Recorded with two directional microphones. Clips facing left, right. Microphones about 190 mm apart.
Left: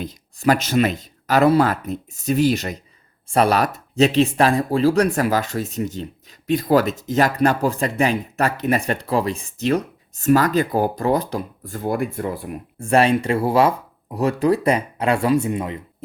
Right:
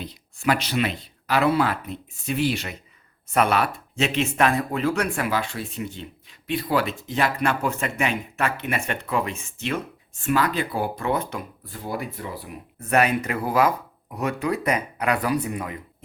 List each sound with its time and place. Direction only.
0.0 s speech: 40° left (ahead or behind)
12.8 s speech: 30° left (ahead or behind)